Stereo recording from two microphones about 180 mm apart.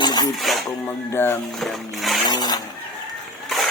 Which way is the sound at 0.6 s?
15° left (ahead or behind).